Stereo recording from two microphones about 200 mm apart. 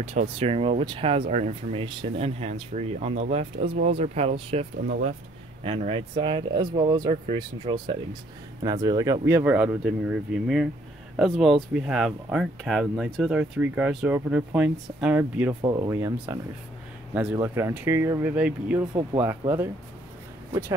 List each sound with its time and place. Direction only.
0.0 s speech: 30° right (ahead or behind); by 15.5 s 10° right (ahead or behind)
15.6 s speech: 20° right (ahead or behind)